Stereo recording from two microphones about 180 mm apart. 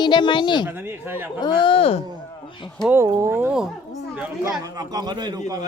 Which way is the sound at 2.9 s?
15° right (ahead or behind).